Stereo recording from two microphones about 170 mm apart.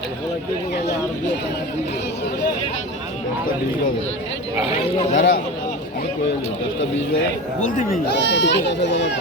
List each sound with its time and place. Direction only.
5.1 s speech: 55° left (ahead or behind)
7.6 s speech: 45° left (ahead or behind)
8.1 s speech: 90° left